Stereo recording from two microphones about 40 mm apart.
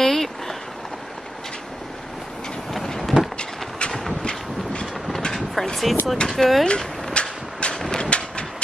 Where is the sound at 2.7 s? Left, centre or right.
Centre.